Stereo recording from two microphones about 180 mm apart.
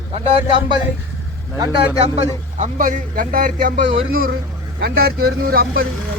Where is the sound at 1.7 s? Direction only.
35° right (ahead or behind); by 5.9 s 55° right (ahead or behind).